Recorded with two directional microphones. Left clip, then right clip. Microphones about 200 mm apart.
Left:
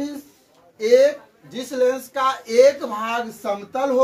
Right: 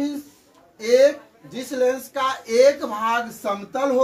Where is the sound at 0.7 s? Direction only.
15° left (ahead or behind).